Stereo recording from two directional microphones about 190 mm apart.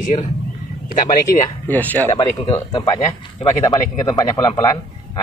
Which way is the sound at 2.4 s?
20° left (ahead or behind).